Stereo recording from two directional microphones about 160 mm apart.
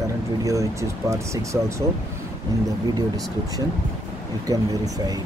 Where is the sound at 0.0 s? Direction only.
20° right (ahead or behind).